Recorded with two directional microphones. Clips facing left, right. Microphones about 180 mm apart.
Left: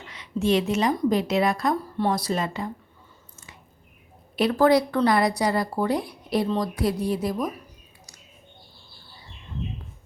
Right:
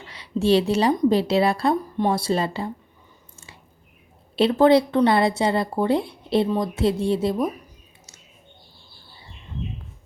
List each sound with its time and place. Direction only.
0.1 s a woman's voice: 35° right (ahead or behind)
1.7 s a woman's voice: 15° right (ahead or behind)
3.3 s biting: 30° right (ahead or behind)
4.4 s a woman's voice: 25° right (ahead or behind)